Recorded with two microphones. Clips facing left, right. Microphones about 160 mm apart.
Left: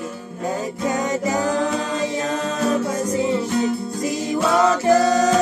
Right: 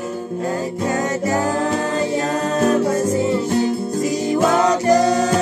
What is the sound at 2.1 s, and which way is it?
Music, 45° right (ahead or behind).